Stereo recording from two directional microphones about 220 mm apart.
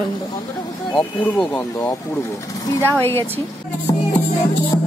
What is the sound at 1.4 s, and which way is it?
Speech, 5° left (ahead or behind).